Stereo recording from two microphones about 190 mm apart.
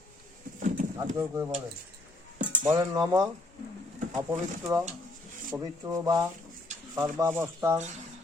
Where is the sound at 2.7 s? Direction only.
20° right (ahead or behind).